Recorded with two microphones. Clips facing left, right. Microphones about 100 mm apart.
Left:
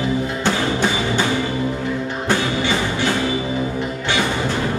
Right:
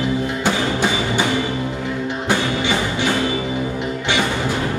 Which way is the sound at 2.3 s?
15° right (ahead or behind).